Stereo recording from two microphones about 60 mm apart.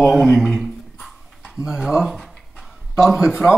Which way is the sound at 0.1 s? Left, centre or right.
Centre.